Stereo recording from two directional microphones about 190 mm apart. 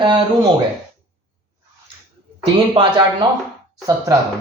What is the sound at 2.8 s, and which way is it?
A man's voice, 25° right (ahead or behind).